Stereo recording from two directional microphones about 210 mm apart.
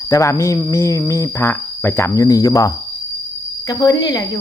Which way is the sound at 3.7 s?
20° left (ahead or behind).